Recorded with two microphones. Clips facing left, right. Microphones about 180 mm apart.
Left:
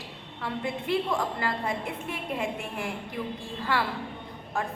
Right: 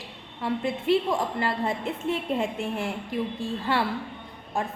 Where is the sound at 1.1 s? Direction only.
20° right (ahead or behind).